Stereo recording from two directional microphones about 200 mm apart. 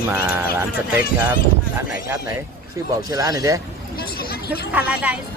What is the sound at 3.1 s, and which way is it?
Speech, 15° right (ahead or behind).